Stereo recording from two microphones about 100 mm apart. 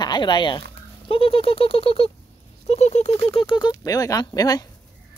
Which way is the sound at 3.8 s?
35° left (ahead or behind).